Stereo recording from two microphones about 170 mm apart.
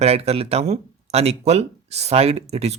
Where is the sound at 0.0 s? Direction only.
35° right (ahead or behind).